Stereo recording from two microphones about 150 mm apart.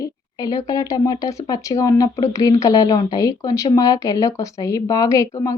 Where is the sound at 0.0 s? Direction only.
25° left (ahead or behind).